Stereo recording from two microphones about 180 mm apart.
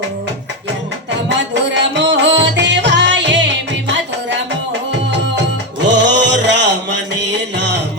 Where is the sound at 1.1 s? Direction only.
80° right.